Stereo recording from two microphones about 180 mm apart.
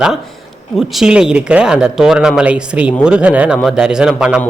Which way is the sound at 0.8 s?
Centre (ahead or behind).